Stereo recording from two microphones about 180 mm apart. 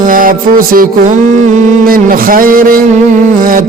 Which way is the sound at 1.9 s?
50° right (ahead or behind).